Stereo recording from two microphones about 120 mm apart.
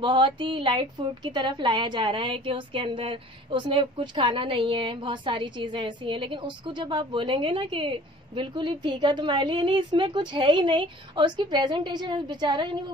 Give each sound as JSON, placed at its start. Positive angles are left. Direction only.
{"t": 0.0, "sound": "a woman's voice", "side_deg": -45}